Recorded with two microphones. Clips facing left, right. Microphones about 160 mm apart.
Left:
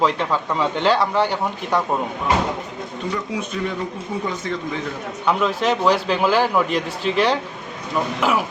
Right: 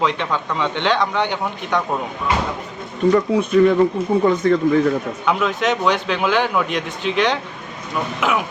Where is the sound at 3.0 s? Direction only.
55° right (ahead or behind).